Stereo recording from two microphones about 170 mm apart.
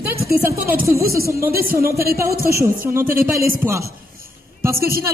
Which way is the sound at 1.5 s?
60° right (ahead or behind).